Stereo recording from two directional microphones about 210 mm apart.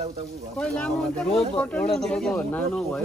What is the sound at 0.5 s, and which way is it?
Speech, 5° left (ahead or behind).